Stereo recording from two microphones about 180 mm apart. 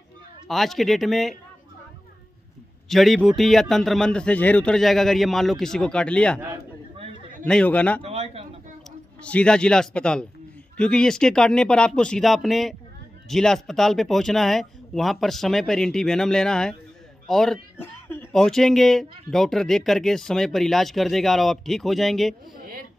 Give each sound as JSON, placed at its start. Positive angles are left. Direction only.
{"t": 0.5, "sound": "speech", "side_deg": 0}
{"t": 2.9, "sound": "speech", "side_deg": 0}
{"t": 7.4, "sound": "a man's voice", "side_deg": 5}
{"t": 8.0, "sound": "a sound", "side_deg": -35}
{"t": 9.2, "sound": "speech", "side_deg": 5}
{"t": 17.3, "sound": "cat", "side_deg": 0}
{"t": 18.4, "sound": "speech", "side_deg": 0}